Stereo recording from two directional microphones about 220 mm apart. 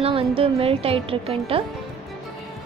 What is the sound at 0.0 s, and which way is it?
A woman's voice, 25° right (ahead or behind).